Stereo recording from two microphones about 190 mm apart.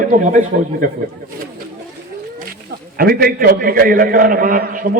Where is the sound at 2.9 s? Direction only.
50° right (ahead or behind).